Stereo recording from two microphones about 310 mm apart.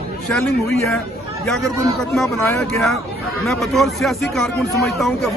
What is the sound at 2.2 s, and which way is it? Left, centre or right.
A man's voice, centre.